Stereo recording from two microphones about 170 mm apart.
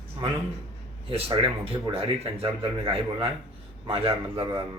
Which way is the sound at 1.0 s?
35° right (ahead or behind).